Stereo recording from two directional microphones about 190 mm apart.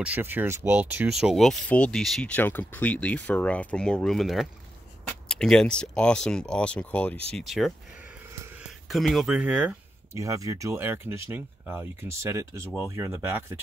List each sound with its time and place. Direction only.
0.0 s speech: 10° right (ahead or behind)
8.3 s a sound: 15° right (ahead or behind)
8.6 s speech: centre (ahead or behind)